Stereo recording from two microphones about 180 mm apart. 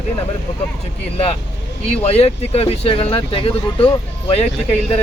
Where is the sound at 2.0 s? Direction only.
35° left (ahead or behind).